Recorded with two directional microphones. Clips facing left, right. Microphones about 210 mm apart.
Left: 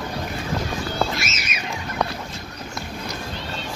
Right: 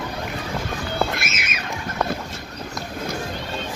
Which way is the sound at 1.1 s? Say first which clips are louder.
Even; 55° right (ahead or behind).